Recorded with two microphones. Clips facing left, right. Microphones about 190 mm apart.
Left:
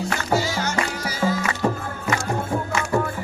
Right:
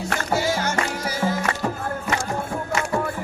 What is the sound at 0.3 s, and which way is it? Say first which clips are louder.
Music: right 1 dB; 50° right (ahead or behind).